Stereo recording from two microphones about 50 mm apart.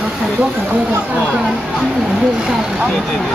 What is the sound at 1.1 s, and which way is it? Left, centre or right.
Speech, right.